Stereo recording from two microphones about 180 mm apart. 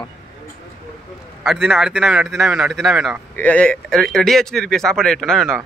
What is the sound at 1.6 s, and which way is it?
Speech, 5° right (ahead or behind).